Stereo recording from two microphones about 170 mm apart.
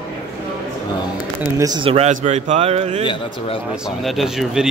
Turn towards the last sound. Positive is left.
turn(degrees=-5)  # may be behind; listen again after turning